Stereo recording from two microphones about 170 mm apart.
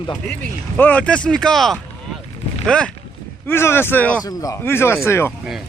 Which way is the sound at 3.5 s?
15° left (ahead or behind).